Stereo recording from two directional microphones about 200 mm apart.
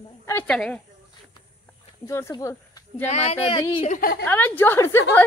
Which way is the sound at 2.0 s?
15° left (ahead or behind).